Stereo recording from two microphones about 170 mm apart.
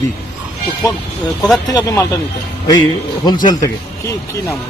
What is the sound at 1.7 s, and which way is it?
Speech, 20° left (ahead or behind).